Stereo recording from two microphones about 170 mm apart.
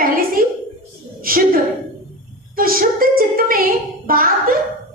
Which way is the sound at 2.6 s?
55° right (ahead or behind).